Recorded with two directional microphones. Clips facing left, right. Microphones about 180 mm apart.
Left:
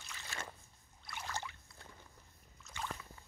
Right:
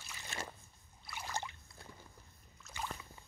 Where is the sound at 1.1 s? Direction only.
10° right (ahead or behind).